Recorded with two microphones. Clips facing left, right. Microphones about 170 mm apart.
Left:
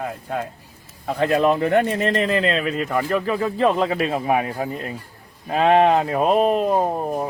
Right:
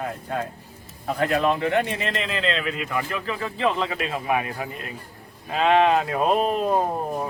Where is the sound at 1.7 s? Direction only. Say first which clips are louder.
Left 5 dB; 45° left (ahead or behind); by 6.2 s 25° left (ahead or behind).